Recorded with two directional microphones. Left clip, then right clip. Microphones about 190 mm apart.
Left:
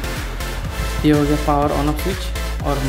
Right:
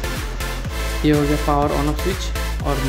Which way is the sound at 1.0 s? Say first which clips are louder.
Left 2 dB; 15° right (ahead or behind).